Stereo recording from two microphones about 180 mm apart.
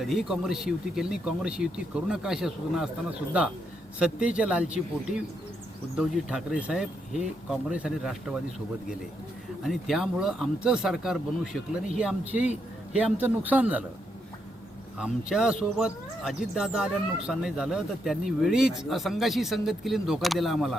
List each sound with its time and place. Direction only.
0.0 s a man's voice: centre (ahead or behind)
9.6 s a man's voice: centre (ahead or behind)
14.9 s speech: 5° right (ahead or behind)